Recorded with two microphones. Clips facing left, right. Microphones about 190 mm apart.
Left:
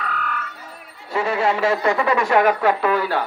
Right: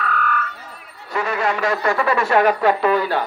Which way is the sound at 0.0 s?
20° left (ahead or behind).